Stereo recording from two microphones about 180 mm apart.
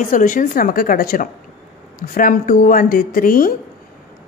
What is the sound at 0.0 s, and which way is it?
A woman's voice, 45° left (ahead or behind).